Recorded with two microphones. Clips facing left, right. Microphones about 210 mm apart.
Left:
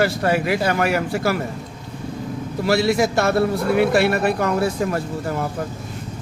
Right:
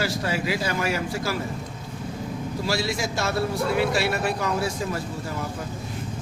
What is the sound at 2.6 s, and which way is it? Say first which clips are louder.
Speech: left 10 dB; 60° left (ahead or behind).